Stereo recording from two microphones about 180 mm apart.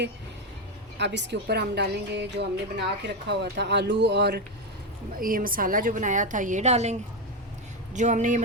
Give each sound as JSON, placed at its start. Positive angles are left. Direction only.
{"t": 0.9, "sound": "a woman's voice", "side_deg": -70}
{"t": 5.2, "sound": "a woman's voice", "side_deg": -50}
{"t": 7.9, "sound": "a woman's voice", "side_deg": -45}